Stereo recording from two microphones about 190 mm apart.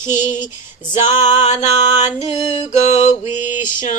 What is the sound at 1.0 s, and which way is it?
Female singing, 40° left (ahead or behind).